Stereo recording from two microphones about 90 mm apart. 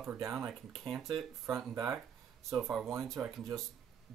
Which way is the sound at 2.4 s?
5° right (ahead or behind).